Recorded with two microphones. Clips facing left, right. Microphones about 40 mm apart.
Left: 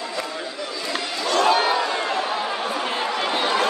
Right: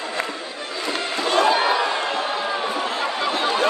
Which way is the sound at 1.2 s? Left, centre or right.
Right.